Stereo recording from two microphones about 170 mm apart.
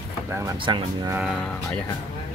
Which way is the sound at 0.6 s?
25° right (ahead or behind).